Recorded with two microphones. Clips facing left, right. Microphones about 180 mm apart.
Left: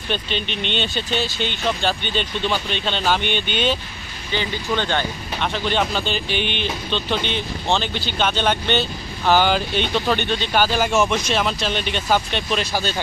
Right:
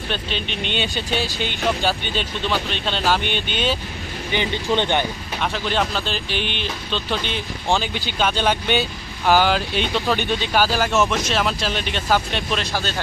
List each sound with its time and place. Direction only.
0.1 s speech: centre (ahead or behind)
4.3 s speech: 20° right (ahead or behind)
5.4 s speech: centre (ahead or behind)